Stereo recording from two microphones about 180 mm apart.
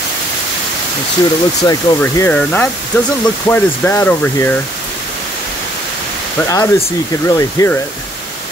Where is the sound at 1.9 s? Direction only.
10° left (ahead or behind).